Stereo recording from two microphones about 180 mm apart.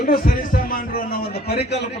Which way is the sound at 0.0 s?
55° left (ahead or behind).